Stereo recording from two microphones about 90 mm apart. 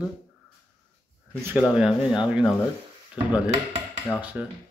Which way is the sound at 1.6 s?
10° right (ahead or behind).